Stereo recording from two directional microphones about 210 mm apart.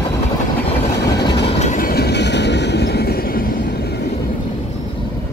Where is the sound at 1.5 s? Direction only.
35° left (ahead or behind).